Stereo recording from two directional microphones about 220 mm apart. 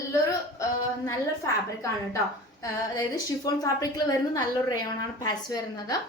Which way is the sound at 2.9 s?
15° left (ahead or behind).